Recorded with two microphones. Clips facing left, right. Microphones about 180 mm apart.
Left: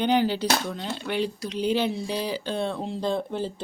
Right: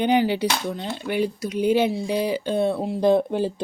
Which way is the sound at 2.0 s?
55° right (ahead or behind).